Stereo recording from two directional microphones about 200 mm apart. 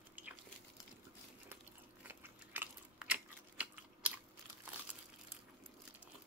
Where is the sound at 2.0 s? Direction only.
10° right (ahead or behind).